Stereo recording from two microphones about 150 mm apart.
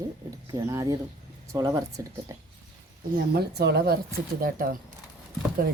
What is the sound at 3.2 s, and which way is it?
Speech, 90° right.